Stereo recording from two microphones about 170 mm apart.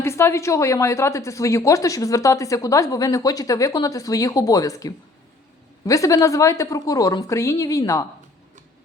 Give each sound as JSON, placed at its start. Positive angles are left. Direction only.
{"t": 0.0, "sound": "a woman's voice", "side_deg": 15}